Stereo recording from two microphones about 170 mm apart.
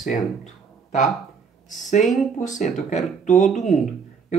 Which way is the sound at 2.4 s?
45° left (ahead or behind).